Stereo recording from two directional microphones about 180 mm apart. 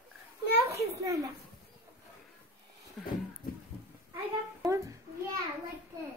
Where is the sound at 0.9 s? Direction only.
15° right (ahead or behind).